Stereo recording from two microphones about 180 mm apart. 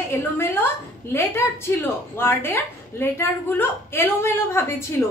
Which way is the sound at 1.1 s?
15° left (ahead or behind).